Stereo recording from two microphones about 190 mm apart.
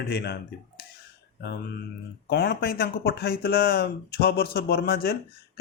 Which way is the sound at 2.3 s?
55° left (ahead or behind).